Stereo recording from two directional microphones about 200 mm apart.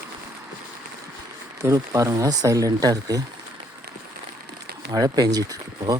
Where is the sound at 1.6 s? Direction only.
15° right (ahead or behind).